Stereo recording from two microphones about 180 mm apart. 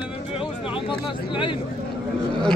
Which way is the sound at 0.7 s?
30° left (ahead or behind).